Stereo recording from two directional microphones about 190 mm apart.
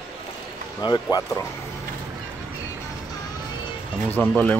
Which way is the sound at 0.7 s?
20° left (ahead or behind).